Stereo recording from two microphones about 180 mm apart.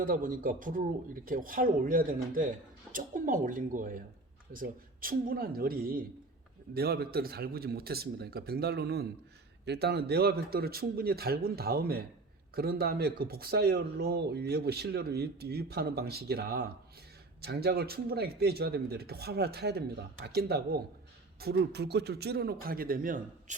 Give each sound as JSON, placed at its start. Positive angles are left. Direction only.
{"t": 0.0, "sound": "speech", "side_deg": -50}